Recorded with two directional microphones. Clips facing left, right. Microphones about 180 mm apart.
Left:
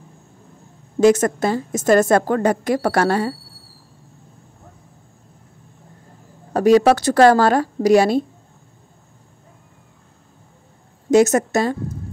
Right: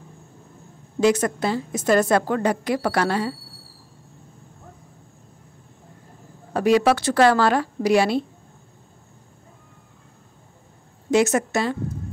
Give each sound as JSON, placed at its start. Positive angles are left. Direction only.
{"t": 1.0, "sound": "a woman's voice", "side_deg": 45}
{"t": 6.5, "sound": "a woman's voice", "side_deg": 40}
{"t": 11.1, "sound": "a woman's voice", "side_deg": 40}